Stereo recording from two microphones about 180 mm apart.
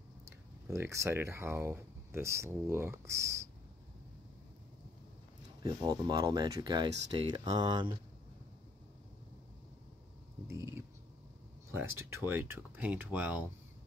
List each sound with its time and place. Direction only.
0.7 s speech: 15° right (ahead or behind)
5.6 s speech: 20° right (ahead or behind)
10.5 s speech: 15° right (ahead or behind)